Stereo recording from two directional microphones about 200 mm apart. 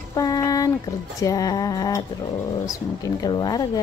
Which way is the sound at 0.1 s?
15° left (ahead or behind).